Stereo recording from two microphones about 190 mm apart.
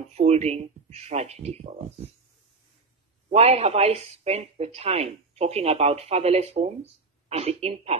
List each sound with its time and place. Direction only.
0.1 s speech: 35° right (ahead or behind)
3.3 s speech: 35° right (ahead or behind)